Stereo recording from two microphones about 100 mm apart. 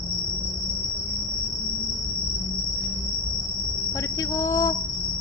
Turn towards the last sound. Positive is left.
turn(degrees=35)  # may be behind; listen again after turning